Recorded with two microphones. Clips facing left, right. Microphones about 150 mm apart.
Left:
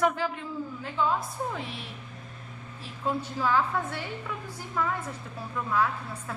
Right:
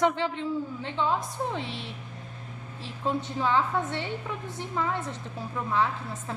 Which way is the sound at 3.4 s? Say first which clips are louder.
Even; 25° right (ahead or behind).